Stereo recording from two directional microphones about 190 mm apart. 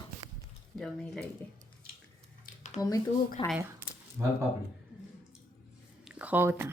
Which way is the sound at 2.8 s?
20° left (ahead or behind).